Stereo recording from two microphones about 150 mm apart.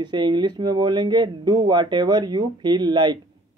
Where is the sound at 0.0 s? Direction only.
30° right (ahead or behind).